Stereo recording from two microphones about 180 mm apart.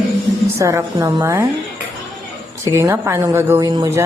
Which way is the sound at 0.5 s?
15° right (ahead or behind).